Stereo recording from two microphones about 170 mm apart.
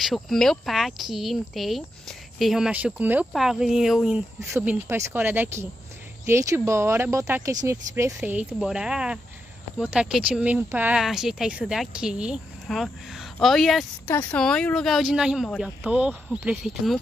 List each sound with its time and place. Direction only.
0.0 s speech: centre (ahead or behind)
4.6 s speech: 10° right (ahead or behind)